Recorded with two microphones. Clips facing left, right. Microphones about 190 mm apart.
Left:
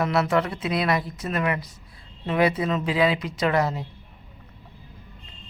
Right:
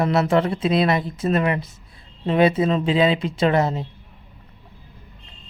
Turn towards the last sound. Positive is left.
turn(degrees=-25)  # may be behind; listen again after turning